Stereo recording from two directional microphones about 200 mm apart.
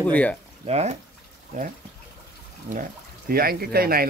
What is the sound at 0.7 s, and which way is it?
Speech, 35° right (ahead or behind).